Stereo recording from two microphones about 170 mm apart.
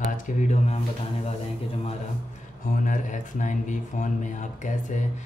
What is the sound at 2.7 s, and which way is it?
A man's voice, 50° left (ahead or behind).